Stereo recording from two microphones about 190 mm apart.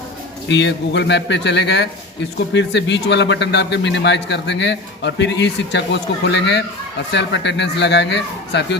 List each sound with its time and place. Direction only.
0.4 s a man's voice: 65° left (ahead or behind)